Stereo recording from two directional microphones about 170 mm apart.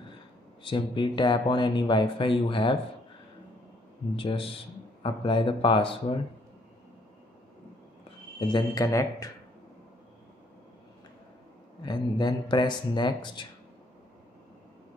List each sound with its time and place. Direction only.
0.7 s speech: 30° left (ahead or behind)
4.2 s speech: 30° left (ahead or behind)
8.4 s speech: 25° left (ahead or behind)
11.8 s speech: 25° left (ahead or behind)